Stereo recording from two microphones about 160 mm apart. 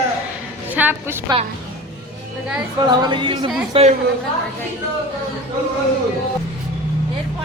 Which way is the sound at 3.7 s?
40° right (ahead or behind).